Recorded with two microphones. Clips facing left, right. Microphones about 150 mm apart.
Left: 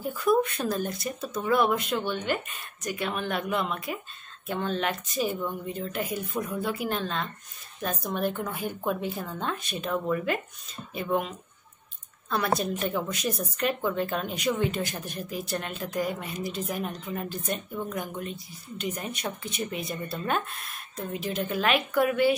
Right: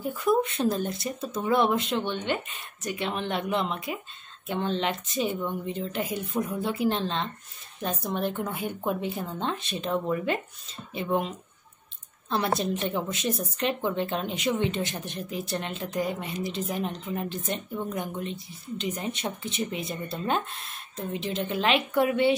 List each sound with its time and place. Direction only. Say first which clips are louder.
0.0 s a woman's voice: even; 25° right (ahead or behind)